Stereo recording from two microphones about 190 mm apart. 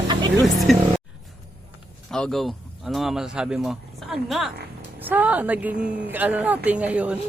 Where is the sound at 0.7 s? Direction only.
Centre (ahead or behind).